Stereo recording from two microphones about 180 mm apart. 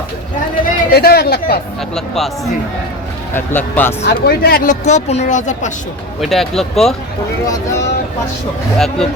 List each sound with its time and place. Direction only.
0.6 s speech: 60° left (ahead or behind)
2.0 s speech: centre (ahead or behind)
4.0 s speech: 55° left (ahead or behind)
6.1 s speech: centre (ahead or behind)
7.4 s speech: 20° left (ahead or behind)